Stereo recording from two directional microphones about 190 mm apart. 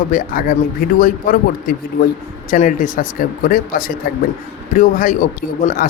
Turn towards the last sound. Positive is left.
turn(degrees=45)  # may be behind; listen again after turning